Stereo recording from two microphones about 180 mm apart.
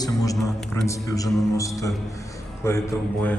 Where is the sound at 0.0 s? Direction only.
20° left (ahead or behind).